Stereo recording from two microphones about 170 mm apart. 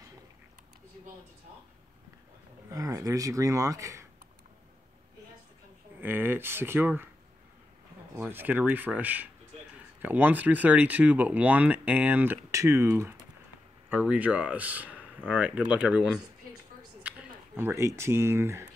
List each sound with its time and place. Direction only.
2.7 s speech: 20° right (ahead or behind)
5.9 s speech: 10° right (ahead or behind)
8.2 s speech: 10° right (ahead or behind)